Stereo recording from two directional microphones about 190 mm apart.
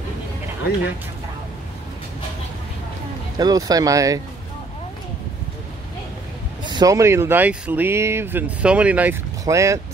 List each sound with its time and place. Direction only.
3.3 s speech: 20° right (ahead or behind)
6.6 s speech: 20° right (ahead or behind)